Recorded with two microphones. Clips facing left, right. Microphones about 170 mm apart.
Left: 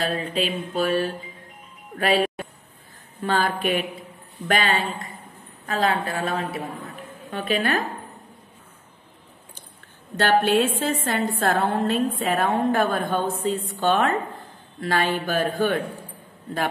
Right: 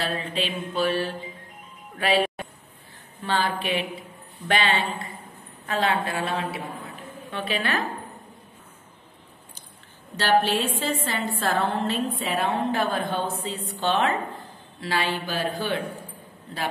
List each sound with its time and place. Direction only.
0.0 s mantra: 40° left (ahead or behind)
2.0 s a woman's voice: 40° left (ahead or behind)
5.7 s mantra: 40° left (ahead or behind)
7.2 s a woman's voice: 45° left (ahead or behind)
10.1 s a woman's voice: 50° left (ahead or behind)